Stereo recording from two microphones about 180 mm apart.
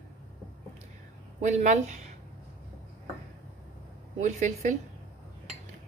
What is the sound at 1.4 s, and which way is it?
Speech, 40° right (ahead or behind).